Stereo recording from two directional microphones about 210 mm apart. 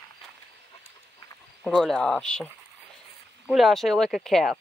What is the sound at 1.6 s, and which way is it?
Speech, centre (ahead or behind).